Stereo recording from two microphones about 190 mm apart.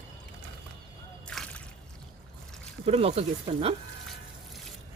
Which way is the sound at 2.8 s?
30° right (ahead or behind).